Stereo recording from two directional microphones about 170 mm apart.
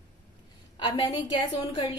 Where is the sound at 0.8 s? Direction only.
30° left (ahead or behind).